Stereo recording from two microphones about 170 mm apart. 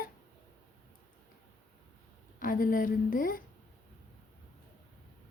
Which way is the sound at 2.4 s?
55° left (ahead or behind).